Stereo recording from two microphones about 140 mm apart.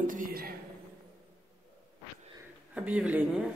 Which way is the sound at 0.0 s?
75° right (ahead or behind).